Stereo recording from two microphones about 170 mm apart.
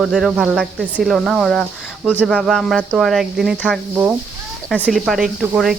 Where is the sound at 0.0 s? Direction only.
Centre (ahead or behind).